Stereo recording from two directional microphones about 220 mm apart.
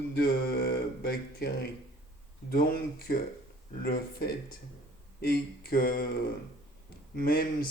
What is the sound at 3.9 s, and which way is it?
Speech, 45° left (ahead or behind).